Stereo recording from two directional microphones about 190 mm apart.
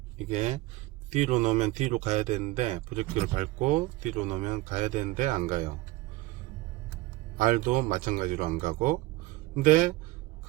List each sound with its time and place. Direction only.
0.3 s speech: 35° right (ahead or behind)
7.3 s speech: 45° right (ahead or behind)